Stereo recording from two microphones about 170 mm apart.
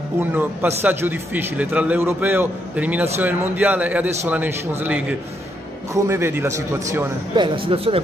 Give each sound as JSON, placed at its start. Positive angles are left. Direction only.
{"t": 0.2, "sound": "a man's voice", "side_deg": -10}
{"t": 7.3, "sound": "speech", "side_deg": -30}